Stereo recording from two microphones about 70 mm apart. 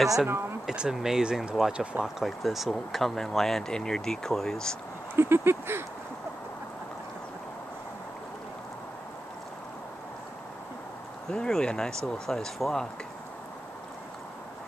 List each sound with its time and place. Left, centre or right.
0.0 s speech: centre
0.3 s speech: right
0.7 s speech: centre
5.1 s a sound: right
11.2 s speech: centre